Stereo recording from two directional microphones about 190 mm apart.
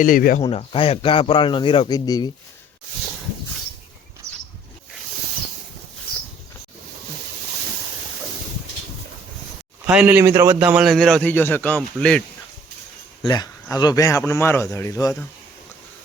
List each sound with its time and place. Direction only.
0.0 s speech: 45° left (ahead or behind)
0.4 s speech: 30° left (ahead or behind)
9.8 s a man's voice: 5° right (ahead or behind)
13.2 s a man's voice: 20° left (ahead or behind)